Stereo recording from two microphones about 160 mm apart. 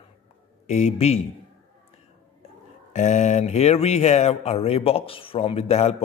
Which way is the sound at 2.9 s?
45° left (ahead or behind).